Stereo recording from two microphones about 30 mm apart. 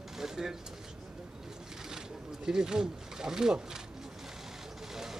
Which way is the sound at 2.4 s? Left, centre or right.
Right.